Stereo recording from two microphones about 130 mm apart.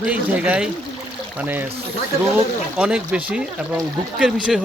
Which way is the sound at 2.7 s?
10° right (ahead or behind).